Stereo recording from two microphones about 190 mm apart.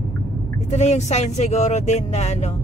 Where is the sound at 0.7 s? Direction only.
35° left (ahead or behind).